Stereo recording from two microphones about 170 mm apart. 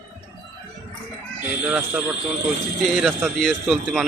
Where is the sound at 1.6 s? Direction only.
5° right (ahead or behind).